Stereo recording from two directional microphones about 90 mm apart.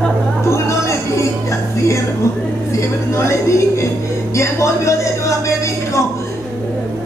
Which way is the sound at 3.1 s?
30° left (ahead or behind).